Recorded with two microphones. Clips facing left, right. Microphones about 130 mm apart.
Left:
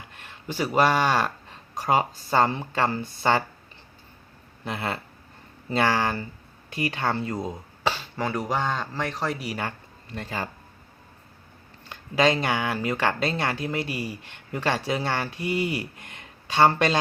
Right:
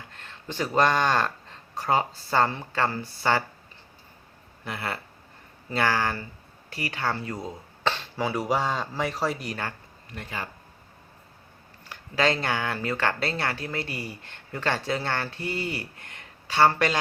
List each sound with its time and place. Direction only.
0.1 s speech: 10° left (ahead or behind)
4.6 s speech: 20° left (ahead or behind)
7.9 s speech: centre (ahead or behind)
10.2 s speech: 35° left (ahead or behind)
11.9 s speech: 15° left (ahead or behind)